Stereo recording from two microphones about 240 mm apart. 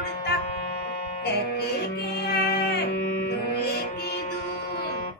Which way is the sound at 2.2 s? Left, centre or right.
Left.